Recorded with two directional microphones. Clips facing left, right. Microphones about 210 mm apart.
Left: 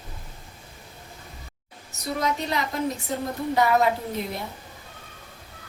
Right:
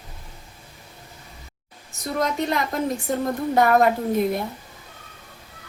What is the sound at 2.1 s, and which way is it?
Speech, 50° right (ahead or behind).